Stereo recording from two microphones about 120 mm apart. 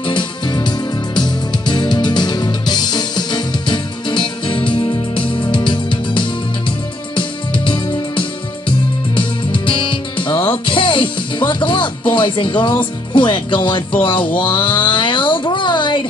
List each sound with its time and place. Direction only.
0.1 s music: 40° left (ahead or behind)
12.1 s speech: 40° left (ahead or behind)
14.0 s a sound: 45° left (ahead or behind)